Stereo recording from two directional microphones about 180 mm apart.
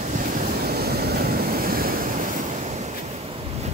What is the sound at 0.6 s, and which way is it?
Waves, 60° right (ahead or behind).